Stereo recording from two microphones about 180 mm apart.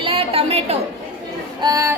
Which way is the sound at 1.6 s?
20° right (ahead or behind).